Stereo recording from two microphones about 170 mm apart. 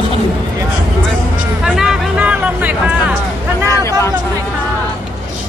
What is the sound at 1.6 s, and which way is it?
Music, 5° right (ahead or behind).